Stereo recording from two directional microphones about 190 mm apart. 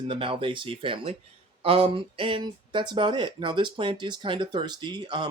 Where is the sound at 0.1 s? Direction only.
30° right (ahead or behind).